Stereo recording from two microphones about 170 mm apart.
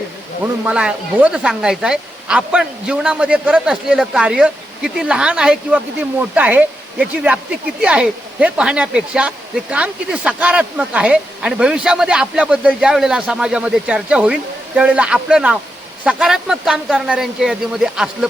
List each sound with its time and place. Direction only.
0.6 s speech: 5° right (ahead or behind)